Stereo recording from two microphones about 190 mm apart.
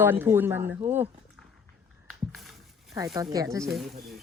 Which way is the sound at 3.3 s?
15° right (ahead or behind).